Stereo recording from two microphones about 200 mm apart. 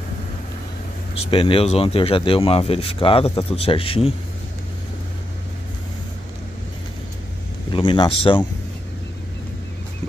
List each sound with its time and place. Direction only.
1.1 s speech: 25° left (ahead or behind)
7.7 s speech: 25° left (ahead or behind)